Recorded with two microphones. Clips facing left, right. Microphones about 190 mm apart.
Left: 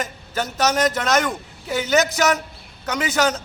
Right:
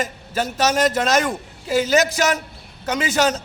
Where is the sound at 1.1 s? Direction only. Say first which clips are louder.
Right 1 dB; 10° right (ahead or behind).